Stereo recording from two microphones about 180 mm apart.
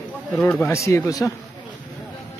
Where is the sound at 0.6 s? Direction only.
15° left (ahead or behind).